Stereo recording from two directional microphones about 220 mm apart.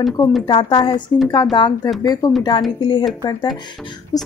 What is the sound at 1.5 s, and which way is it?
A woman's voice, 20° left (ahead or behind).